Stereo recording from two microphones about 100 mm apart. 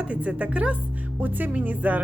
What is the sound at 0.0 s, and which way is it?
Speech, 15° right (ahead or behind).